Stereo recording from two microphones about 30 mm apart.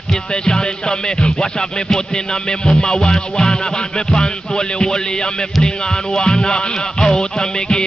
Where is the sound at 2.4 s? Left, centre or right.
Left.